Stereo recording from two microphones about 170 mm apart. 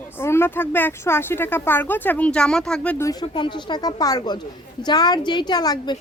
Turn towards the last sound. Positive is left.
turn(degrees=25)  # may be behind; listen again after turning